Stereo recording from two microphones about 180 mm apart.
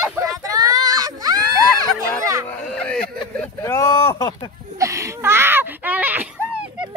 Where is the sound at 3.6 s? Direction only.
15° left (ahead or behind).